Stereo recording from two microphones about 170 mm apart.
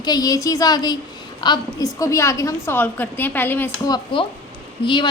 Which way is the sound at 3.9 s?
30° left (ahead or behind).